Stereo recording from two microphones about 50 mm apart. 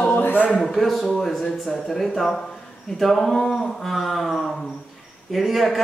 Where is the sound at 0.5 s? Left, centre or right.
Centre.